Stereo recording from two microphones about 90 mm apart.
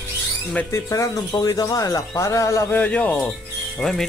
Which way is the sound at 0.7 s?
35° left (ahead or behind).